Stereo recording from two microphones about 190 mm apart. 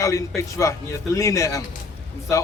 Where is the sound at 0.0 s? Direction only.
15° left (ahead or behind).